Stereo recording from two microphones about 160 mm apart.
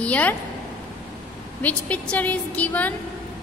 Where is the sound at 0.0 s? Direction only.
10° left (ahead or behind).